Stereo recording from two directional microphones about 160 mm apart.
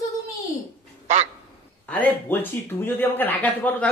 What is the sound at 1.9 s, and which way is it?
Speech, 10° left (ahead or behind).